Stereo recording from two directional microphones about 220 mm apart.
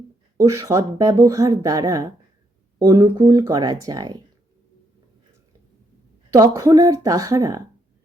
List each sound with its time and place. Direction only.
0.3 s speech: 15° right (ahead or behind)
6.3 s speech: 15° right (ahead or behind)